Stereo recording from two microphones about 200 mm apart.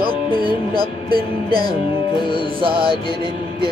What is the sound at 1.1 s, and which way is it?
Music, 50° right (ahead or behind).